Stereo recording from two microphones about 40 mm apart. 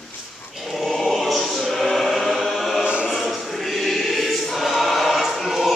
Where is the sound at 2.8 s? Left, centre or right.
Right.